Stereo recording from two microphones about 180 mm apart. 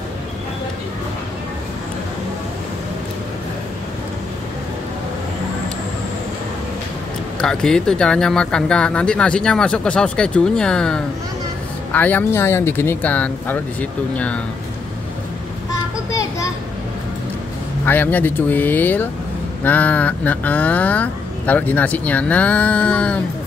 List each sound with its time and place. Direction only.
7.3 s speech: 5° left (ahead or behind)
16.1 s children playing: 20° left (ahead or behind)
17.8 s speech: 10° left (ahead or behind)